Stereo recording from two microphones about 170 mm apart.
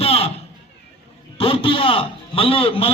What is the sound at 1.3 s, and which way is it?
A man's voice, 35° left (ahead or behind).